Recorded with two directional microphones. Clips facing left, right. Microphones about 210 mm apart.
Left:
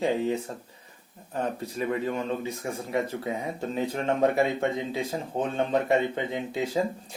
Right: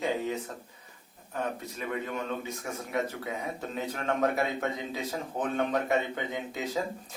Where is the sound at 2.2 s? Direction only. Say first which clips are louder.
Left 4 dB; 30° left (ahead or behind).